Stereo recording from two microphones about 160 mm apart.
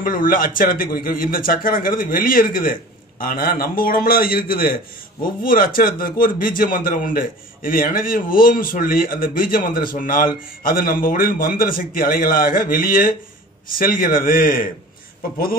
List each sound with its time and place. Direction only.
0.0 s a man's voice: 60° left (ahead or behind)